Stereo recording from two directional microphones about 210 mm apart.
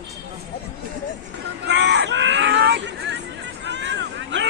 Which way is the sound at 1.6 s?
55° right (ahead or behind).